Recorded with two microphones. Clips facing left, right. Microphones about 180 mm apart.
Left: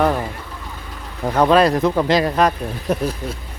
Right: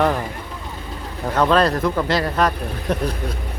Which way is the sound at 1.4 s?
15° left (ahead or behind).